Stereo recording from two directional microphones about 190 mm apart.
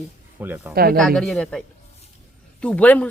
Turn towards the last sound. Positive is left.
turn(degrees=5)  # may be behind; listen again after turning